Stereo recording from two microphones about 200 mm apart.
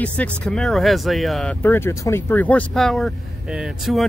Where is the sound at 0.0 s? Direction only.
5° left (ahead or behind).